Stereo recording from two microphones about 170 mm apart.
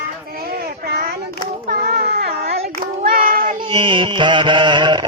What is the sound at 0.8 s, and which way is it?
Child singing, 65° right (ahead or behind).